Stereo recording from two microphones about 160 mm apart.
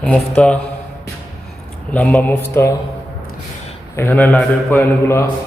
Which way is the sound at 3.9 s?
15° left (ahead or behind).